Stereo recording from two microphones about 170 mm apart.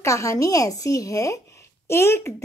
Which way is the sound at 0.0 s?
15° left (ahead or behind).